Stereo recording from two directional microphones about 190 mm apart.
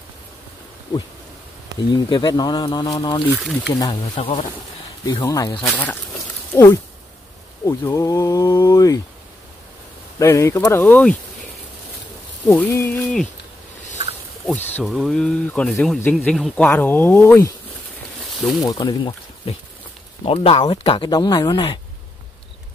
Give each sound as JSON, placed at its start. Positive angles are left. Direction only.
{"t": 2.0, "sound": "speech", "side_deg": 25}
{"t": 3.3, "sound": "speech", "side_deg": 0}
{"t": 3.7, "sound": "speech", "side_deg": 20}
{"t": 5.0, "sound": "speech", "side_deg": 20}
{"t": 5.6, "sound": "speech", "side_deg": 5}
{"t": 10.1, "sound": "speech", "side_deg": 15}
{"t": 12.4, "sound": "speech", "side_deg": 15}
{"t": 14.4, "sound": "speech", "side_deg": 10}
{"t": 18.6, "sound": "speech", "side_deg": 20}